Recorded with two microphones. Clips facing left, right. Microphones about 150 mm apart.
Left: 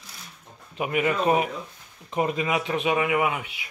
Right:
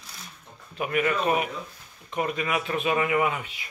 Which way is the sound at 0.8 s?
20° left (ahead or behind).